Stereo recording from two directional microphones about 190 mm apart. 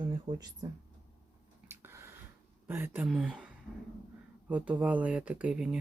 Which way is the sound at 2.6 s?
10° right (ahead or behind).